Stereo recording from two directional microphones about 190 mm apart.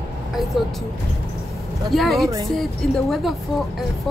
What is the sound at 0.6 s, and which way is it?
Speech, centre (ahead or behind).